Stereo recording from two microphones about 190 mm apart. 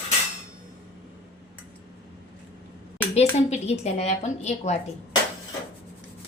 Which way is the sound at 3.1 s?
35° left (ahead or behind).